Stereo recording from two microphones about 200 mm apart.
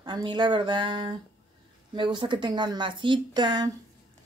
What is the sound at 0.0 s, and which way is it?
Speech, 20° right (ahead or behind).